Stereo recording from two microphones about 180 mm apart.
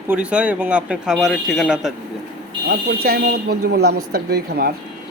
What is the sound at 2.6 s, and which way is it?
Speech, 60° right (ahead or behind).